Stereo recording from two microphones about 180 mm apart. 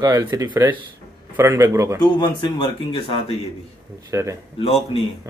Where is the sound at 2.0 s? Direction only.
25° left (ahead or behind).